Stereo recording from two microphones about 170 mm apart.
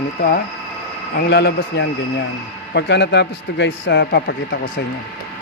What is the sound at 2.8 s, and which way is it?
A man's voice, 90° left.